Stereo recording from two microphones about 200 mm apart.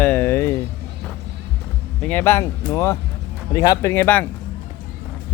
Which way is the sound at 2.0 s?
10° left (ahead or behind).